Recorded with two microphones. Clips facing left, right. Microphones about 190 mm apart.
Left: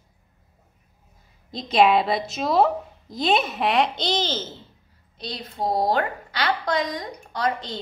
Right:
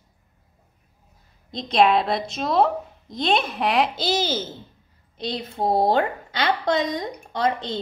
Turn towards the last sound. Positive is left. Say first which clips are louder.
# right 2 dB
turn(degrees=-25)  # may be behind; listen again after turning